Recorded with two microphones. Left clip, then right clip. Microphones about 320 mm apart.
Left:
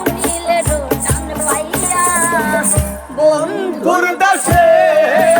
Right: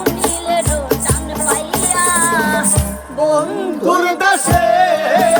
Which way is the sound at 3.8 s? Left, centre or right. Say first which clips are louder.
Left 1 dB; centre.